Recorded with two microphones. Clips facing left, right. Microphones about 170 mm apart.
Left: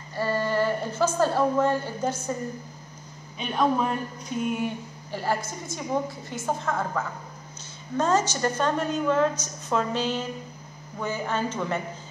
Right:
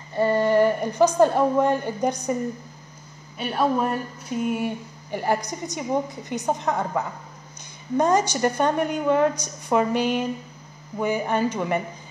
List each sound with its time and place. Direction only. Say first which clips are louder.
0.1 s a woman's voice: right 6 dB; 20° right (ahead or behind)
3.3 s a woman's voice: right 1 dB; 5° right (ahead or behind)